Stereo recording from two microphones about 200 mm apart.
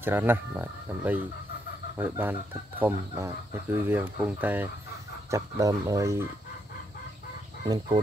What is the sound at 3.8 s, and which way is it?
Speech, 10° right (ahead or behind).